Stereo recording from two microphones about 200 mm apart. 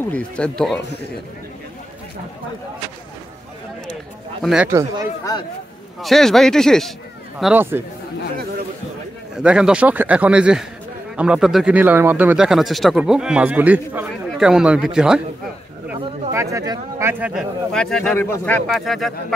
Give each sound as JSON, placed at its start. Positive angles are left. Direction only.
{"t": 0.1, "sound": "speech", "side_deg": 5}
{"t": 4.4, "sound": "speech", "side_deg": 0}
{"t": 4.6, "sound": "speech", "side_deg": -15}
{"t": 5.9, "sound": "speech", "side_deg": 0}
{"t": 9.3, "sound": "speech", "side_deg": -5}
{"t": 15.9, "sound": "speech", "side_deg": -15}